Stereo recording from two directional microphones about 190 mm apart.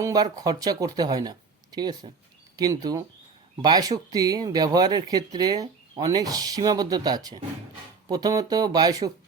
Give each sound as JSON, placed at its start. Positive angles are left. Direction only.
{"t": 0.0, "sound": "speech", "side_deg": -20}